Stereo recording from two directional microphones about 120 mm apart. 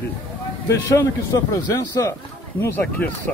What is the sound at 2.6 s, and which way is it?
Speech, 15° left (ahead or behind).